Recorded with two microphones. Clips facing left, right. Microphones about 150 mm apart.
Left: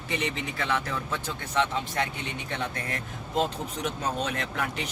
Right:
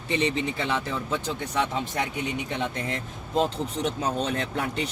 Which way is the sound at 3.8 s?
30° right (ahead or behind).